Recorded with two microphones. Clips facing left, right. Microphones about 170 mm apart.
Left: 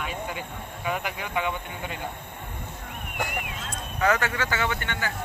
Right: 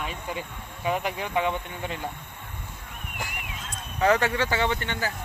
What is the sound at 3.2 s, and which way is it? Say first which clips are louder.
Speech: left 6 dB; 50° left (ahead or behind).